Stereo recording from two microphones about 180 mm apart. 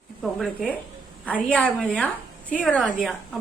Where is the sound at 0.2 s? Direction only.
Centre (ahead or behind).